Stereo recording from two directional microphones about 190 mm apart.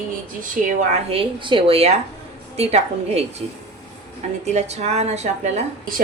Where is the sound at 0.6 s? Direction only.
45° right (ahead or behind).